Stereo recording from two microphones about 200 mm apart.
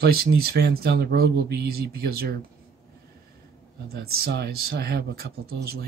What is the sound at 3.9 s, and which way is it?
Speech, 50° right (ahead or behind).